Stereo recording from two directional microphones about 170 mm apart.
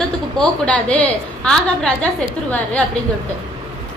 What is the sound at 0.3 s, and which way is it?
A woman's voice, 5° left (ahead or behind).